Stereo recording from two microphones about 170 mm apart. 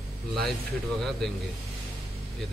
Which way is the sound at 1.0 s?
Centre (ahead or behind).